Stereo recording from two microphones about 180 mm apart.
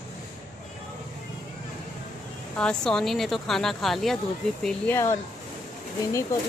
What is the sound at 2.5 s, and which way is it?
Speech, 5° left (ahead or behind).